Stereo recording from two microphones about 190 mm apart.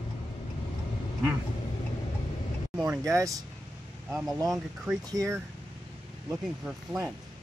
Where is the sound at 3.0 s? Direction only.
15° right (ahead or behind).